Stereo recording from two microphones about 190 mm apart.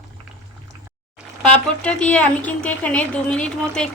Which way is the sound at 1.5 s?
5° left (ahead or behind).